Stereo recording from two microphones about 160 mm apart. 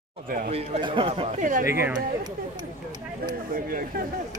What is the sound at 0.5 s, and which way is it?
Speech, 35° right (ahead or behind).